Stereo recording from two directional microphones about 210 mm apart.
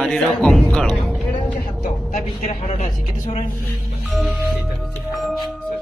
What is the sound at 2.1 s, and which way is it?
A woman's voice, 30° left (ahead or behind).